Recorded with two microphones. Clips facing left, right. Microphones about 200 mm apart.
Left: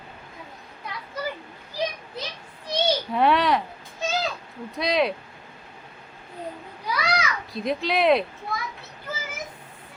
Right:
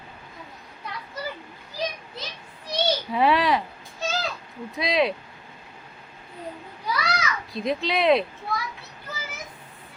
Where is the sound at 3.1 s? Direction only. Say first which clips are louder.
Even; centre (ahead or behind).